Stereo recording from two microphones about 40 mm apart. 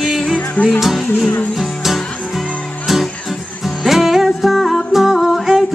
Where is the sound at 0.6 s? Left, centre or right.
Left.